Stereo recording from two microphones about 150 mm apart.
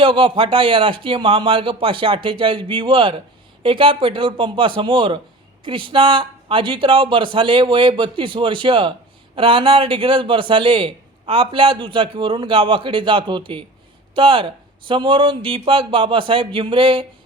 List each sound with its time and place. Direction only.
0.0 s speech: 35° right (ahead or behind)